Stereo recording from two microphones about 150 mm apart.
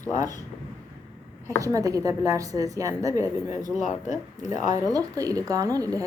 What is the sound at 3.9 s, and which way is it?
Speech, 55° left (ahead or behind).